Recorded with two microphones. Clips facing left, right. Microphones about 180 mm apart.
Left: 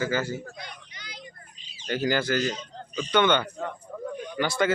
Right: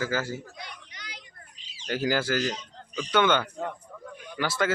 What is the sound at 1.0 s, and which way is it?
Vehicle, 75° right (ahead or behind).